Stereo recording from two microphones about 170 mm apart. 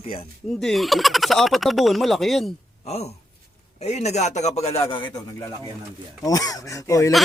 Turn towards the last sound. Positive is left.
turn(degrees=20)  # may be behind; listen again after turning